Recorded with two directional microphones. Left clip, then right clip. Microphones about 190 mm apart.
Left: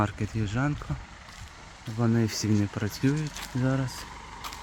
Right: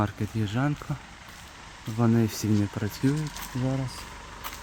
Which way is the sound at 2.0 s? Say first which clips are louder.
Right 2 dB; 15° right (ahead or behind).